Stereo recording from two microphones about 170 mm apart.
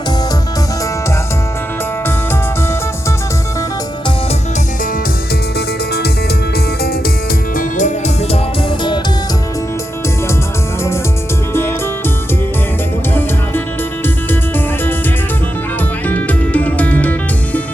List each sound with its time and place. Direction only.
5.5 s music: 75° left (ahead or behind)
7.6 s music: 45° left (ahead or behind)
16.0 s music: 10° left (ahead or behind)